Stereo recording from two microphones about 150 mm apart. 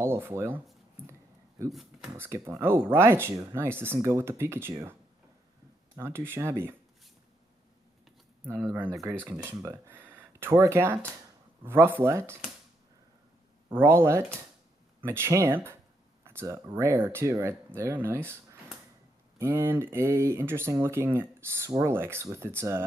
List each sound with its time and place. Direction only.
0.0 s speech: 15° right (ahead or behind)
1.6 s speech: 20° right (ahead or behind)
5.9 s speech: 15° right (ahead or behind)
8.9 s speech: 5° left (ahead or behind)
9.3 s speech: 15° right (ahead or behind)
13.7 s speech: 15° right (ahead or behind)